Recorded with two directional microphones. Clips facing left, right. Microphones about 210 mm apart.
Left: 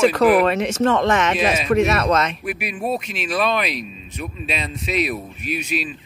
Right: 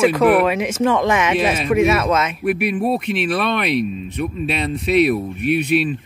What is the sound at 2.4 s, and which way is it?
Speech, 60° right (ahead or behind).